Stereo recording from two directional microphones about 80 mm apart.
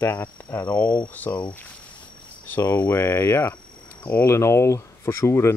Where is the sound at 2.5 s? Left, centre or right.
Left.